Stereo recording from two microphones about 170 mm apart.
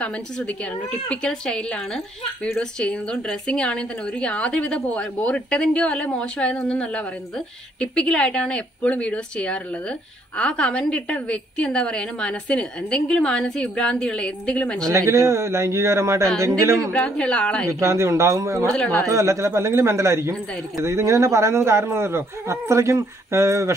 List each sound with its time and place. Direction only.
0.0 s speech: 5° left (ahead or behind)
14.9 s a man's voice: 15° right (ahead or behind)
16.9 s speech: 5° left (ahead or behind)
17.6 s a man's voice: 15° right (ahead or behind)
18.7 s speech: 5° left (ahead or behind)
19.0 s a man's voice: 15° right (ahead or behind)